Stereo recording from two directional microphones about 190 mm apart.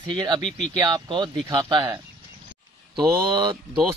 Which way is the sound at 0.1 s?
25° right (ahead or behind).